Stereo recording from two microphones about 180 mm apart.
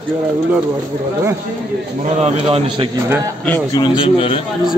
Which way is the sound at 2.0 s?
40° right (ahead or behind).